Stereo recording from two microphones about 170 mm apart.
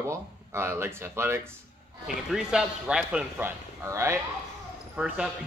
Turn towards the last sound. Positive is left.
turn(degrees=-5)  # may be behind; listen again after turning